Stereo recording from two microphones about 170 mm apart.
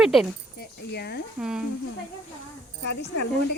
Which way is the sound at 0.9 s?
75° left (ahead or behind).